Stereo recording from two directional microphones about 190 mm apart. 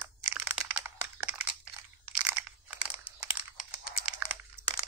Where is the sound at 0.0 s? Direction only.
10° right (ahead or behind).